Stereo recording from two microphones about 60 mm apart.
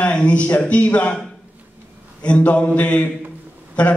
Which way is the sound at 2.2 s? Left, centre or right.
Left.